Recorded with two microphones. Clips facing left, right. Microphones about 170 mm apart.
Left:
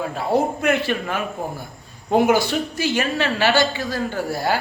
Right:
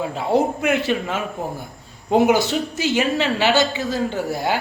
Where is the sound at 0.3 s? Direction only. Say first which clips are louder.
Right 1 dB; 15° right (ahead or behind).